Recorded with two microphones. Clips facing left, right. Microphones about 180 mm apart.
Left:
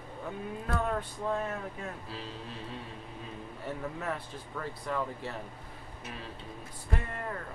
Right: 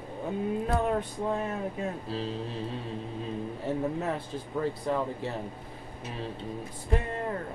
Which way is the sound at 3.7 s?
25° right (ahead or behind).